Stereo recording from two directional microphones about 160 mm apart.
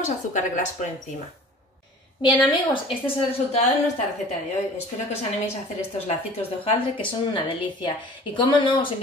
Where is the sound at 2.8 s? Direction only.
35° left (ahead or behind).